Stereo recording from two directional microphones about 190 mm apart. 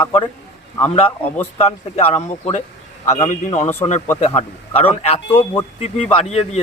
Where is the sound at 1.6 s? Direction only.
35° left (ahead or behind).